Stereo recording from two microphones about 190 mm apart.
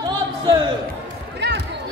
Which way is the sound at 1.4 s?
65° right (ahead or behind).